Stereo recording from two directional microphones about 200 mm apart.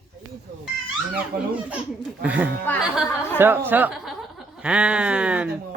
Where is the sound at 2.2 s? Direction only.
5° right (ahead or behind).